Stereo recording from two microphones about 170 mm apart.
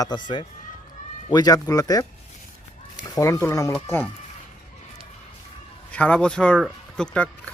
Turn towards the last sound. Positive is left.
turn(degrees=5)  # may be behind; listen again after turning